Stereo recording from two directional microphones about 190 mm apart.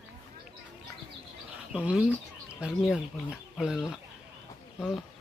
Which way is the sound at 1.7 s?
5° right (ahead or behind).